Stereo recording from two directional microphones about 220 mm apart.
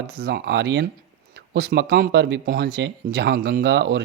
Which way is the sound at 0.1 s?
45° right (ahead or behind).